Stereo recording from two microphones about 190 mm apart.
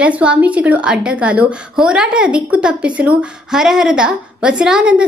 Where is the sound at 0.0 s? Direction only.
5° right (ahead or behind).